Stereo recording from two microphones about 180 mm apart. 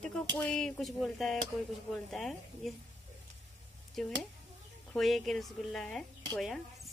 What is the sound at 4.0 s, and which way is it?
Speech, centre (ahead or behind).